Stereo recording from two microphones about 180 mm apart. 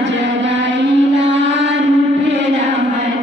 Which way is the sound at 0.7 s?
80° right.